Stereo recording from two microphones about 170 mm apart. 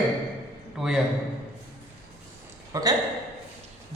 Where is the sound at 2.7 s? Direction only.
20° right (ahead or behind).